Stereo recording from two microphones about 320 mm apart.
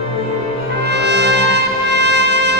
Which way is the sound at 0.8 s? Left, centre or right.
Right.